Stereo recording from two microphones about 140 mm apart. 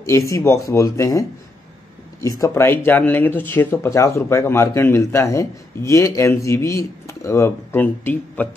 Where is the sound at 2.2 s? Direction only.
25° left (ahead or behind).